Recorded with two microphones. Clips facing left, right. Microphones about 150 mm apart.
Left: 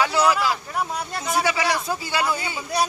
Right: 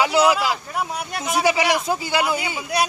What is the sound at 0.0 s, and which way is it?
Speech, 15° right (ahead or behind).